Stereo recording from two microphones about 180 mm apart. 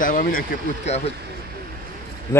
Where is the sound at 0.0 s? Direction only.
50° left (ahead or behind).